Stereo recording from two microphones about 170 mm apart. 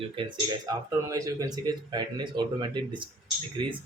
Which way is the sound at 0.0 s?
30° right (ahead or behind).